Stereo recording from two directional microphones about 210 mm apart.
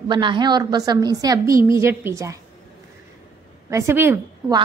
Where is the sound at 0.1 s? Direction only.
20° right (ahead or behind).